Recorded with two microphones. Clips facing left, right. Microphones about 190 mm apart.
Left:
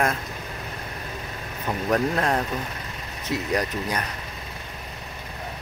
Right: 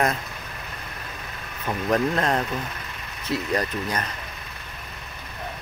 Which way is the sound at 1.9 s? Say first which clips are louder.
Right 1 dB; 10° left (ahead or behind).